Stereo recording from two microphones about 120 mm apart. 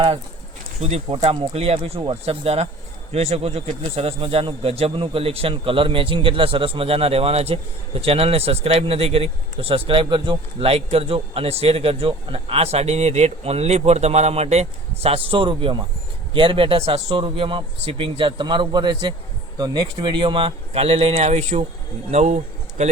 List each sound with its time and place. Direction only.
0.8 s speech: 65° right (ahead or behind)
22.8 s a man's voice: 90° right